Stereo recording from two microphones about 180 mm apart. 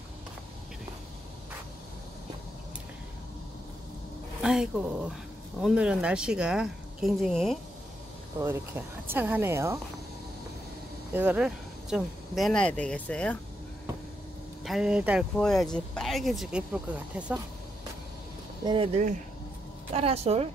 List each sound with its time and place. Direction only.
4.4 s speech: 5° right (ahead or behind)
8.4 s speech: 15° right (ahead or behind)
11.1 s speech: 5° right (ahead or behind)
14.6 s speech: centre (ahead or behind)
18.6 s speech: 25° right (ahead or behind)
19.9 s a woman's voice: 35° right (ahead or behind)